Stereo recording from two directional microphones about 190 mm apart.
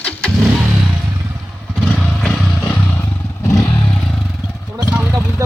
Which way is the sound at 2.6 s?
15° left (ahead or behind).